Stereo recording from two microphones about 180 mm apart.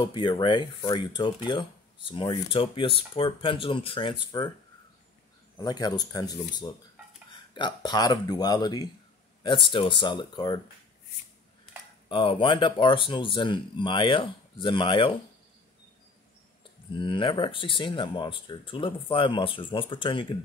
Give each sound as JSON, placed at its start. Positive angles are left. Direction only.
{"t": 0.0, "sound": "speech", "side_deg": 25}
{"t": 5.6, "sound": "speech", "side_deg": 20}
{"t": 12.1, "sound": "speech", "side_deg": 30}
{"t": 16.9, "sound": "speech", "side_deg": 25}